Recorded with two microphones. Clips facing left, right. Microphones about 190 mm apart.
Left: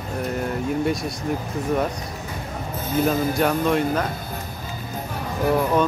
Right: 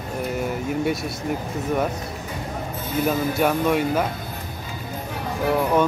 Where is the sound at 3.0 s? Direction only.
5° right (ahead or behind).